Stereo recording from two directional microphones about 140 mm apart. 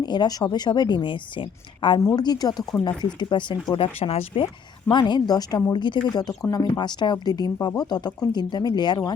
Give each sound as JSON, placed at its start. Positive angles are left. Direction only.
{"t": 0.0, "sound": "speech", "side_deg": 30}
{"t": 4.9, "sound": "speech", "side_deg": 30}